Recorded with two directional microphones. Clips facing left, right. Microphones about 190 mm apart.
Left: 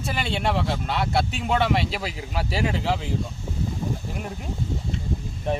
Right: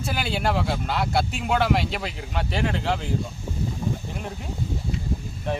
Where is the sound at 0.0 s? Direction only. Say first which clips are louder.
Even; centre (ahead or behind).